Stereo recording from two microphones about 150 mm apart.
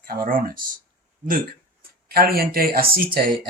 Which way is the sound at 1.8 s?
90° right.